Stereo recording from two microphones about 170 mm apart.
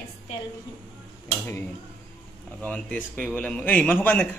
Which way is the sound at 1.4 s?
10° left (ahead or behind).